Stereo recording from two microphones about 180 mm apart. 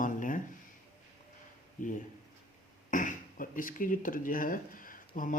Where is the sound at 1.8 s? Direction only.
45° left (ahead or behind).